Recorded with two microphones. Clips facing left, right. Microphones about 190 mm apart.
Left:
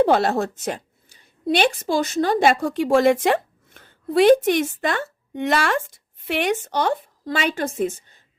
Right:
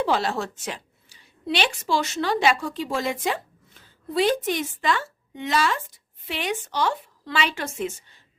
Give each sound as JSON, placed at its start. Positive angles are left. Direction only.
{"t": 0.0, "sound": "a woman's voice", "side_deg": 55}